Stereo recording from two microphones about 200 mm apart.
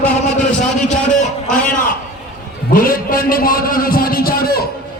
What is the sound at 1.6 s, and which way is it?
Speech, 40° left (ahead or behind).